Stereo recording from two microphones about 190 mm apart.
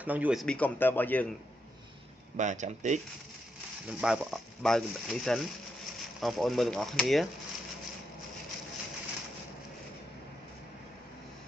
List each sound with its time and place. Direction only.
0.0 s a man's voice: 10° right (ahead or behind); by 1.3 s 10° left (ahead or behind)
2.3 s speech: 40° right (ahead or behind)
3.8 s speech: 5° right (ahead or behind)